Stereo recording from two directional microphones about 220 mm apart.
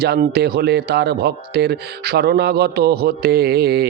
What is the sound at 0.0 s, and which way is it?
Speech, 45° right (ahead or behind).